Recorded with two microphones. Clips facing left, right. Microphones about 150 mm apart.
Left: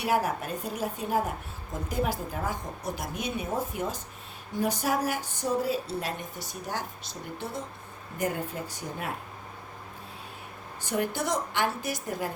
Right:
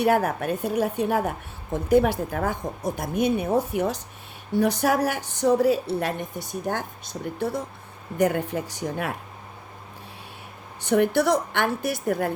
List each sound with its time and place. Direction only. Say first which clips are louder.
0.0 s a woman's voice: right 6 dB; 55° right (ahead or behind)
8.2 s speech: right 8 dB; 80° right
10.8 s speech: right 9 dB; 65° right (ahead or behind)